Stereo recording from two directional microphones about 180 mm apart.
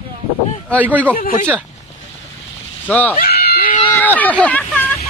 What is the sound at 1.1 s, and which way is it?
Speech, 55° left (ahead or behind).